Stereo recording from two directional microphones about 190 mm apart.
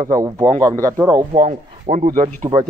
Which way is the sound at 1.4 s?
40° right (ahead or behind).